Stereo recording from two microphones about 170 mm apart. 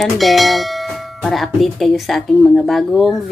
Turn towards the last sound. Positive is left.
turn(degrees=0)  # may be behind; listen again after turning